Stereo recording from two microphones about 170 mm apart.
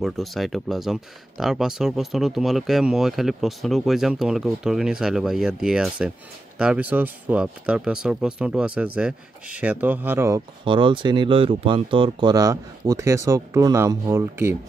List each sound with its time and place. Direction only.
0.0 s speech: centre (ahead or behind); by 10.4 s 15° right (ahead or behind)
10.6 s speech: 30° right (ahead or behind)